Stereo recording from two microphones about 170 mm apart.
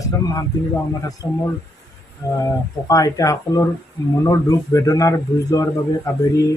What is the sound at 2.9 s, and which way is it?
A man's voice, 20° left (ahead or behind).